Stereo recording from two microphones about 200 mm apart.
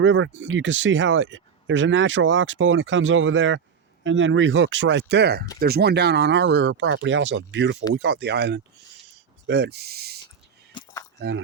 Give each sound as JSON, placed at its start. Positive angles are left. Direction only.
{"t": 0.0, "sound": "speech", "side_deg": -70}